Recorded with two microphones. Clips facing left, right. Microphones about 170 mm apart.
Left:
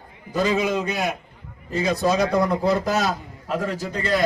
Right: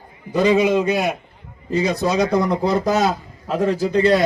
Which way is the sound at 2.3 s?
20° right (ahead or behind).